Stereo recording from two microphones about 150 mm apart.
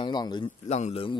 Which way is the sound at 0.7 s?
45° left (ahead or behind).